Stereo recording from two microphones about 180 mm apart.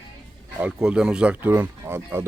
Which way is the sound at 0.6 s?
5° right (ahead or behind).